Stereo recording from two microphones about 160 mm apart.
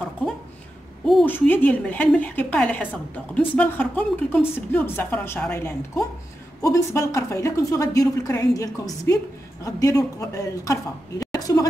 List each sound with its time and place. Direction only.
1.2 s a woman's voice: 10° left (ahead or behind)